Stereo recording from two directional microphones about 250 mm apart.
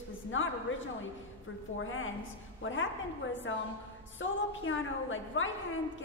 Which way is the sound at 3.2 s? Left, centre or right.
Left.